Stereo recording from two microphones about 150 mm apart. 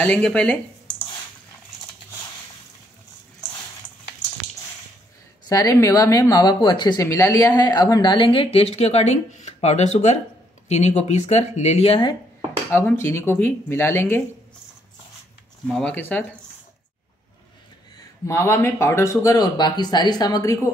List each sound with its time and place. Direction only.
0.0 s speech: 5° left (ahead or behind)
5.5 s speech: 25° left (ahead or behind); by 12.1 s 40° left (ahead or behind)
12.7 s speech: 15° left (ahead or behind)
15.6 s speech: 5° left (ahead or behind)
18.2 s speech: 20° left (ahead or behind)